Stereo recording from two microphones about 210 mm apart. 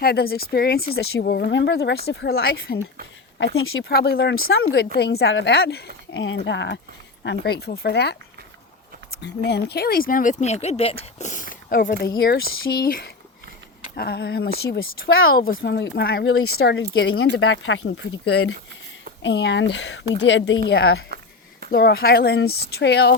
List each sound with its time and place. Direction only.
0.0 s speech: 45° left (ahead or behind)
3.6 s speech: 75° left (ahead or behind)
3.8 s speech: 50° left (ahead or behind)
9.2 s speech: 50° left (ahead or behind)
15.1 s speech: 75° left (ahead or behind)
15.5 s speech: 55° left (ahead or behind)
16.2 s speech: 85° left
16.6 s speech: 50° left (ahead or behind)
17.2 s speech: 85° left; by 21.0 s 65° left (ahead or behind)
21.7 s speech: 45° left (ahead or behind)